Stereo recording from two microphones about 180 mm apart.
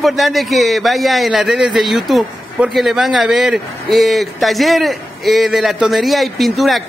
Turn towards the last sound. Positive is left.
turn(degrees=0)  # may be behind; listen again after turning